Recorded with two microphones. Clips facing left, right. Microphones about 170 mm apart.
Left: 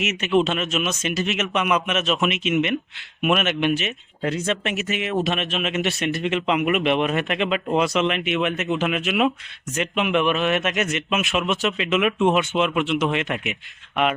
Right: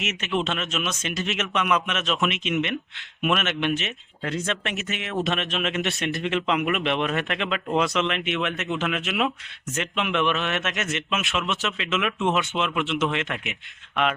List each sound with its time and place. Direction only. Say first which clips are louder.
0.0 s speech: left 7 dB; 10° left (ahead or behind)
4.2 s speech: left 4 dB; 25° left (ahead or behind)
4.4 s speech: left 4 dB; centre (ahead or behind)